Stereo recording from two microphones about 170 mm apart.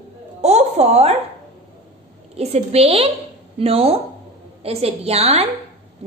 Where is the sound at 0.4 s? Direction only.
40° right (ahead or behind).